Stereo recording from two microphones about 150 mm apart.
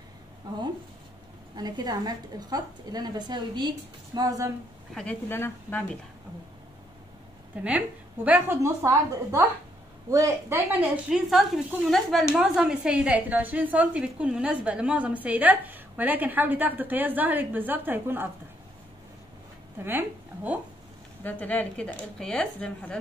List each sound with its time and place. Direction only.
0.5 s a woman's voice: 25° right (ahead or behind)
5.3 s a woman's voice: 15° left (ahead or behind)
7.6 s a woman's voice: 10° right (ahead or behind)
11.1 s a woman's voice: centre (ahead or behind)
19.8 s a woman's voice: 15° right (ahead or behind)
21.2 s a woman's voice: 10° left (ahead or behind)